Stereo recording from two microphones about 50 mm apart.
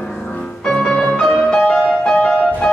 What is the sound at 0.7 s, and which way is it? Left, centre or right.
Music, centre.